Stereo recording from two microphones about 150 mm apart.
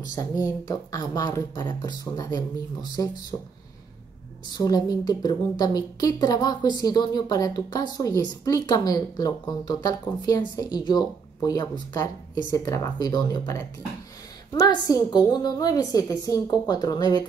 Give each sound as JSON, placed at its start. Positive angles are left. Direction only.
{"t": 0.0, "sound": "a woman's voice", "side_deg": 25}
{"t": 4.5, "sound": "a woman's voice", "side_deg": 25}